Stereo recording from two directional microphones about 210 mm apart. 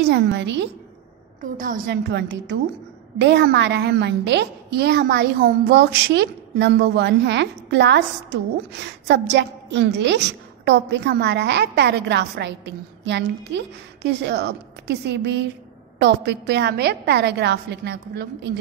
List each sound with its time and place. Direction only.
0.0 s a woman's voice: 55° right (ahead or behind)
1.4 s a woman's voice: 40° right (ahead or behind)
2.0 s a woman's voice: 55° right (ahead or behind)